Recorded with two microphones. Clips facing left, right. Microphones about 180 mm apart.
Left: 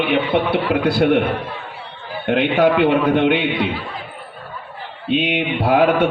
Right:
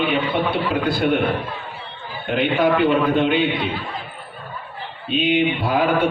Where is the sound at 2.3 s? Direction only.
75° left (ahead or behind).